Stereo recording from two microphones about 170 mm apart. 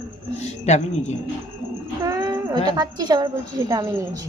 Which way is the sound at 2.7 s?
25° right (ahead or behind).